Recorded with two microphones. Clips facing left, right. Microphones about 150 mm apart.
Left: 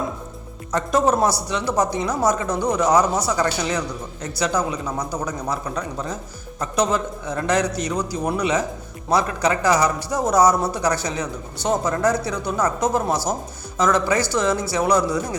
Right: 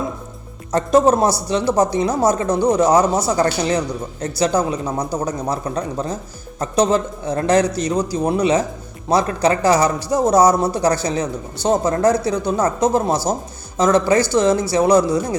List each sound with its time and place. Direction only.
0.7 s a man's voice: 30° right (ahead or behind)